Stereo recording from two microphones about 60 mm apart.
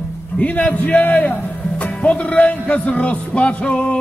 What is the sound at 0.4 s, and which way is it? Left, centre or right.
A man's voice, left.